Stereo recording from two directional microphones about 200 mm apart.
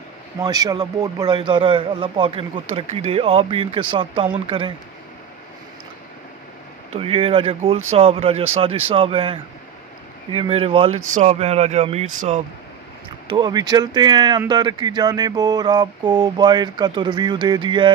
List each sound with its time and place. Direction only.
0.4 s a man's voice: 20° right (ahead or behind)
6.9 s a man's voice: 30° right (ahead or behind)
13.3 s a man's voice: 20° right (ahead or behind)